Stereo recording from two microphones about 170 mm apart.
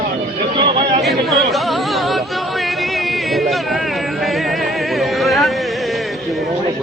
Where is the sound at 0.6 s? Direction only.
30° right (ahead or behind).